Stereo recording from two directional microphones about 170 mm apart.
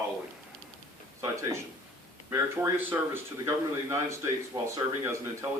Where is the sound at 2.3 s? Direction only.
15° right (ahead or behind).